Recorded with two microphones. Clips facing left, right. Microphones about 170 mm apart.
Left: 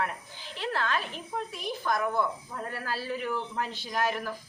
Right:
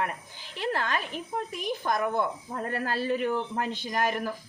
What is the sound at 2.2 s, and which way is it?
Speech, 50° right (ahead or behind).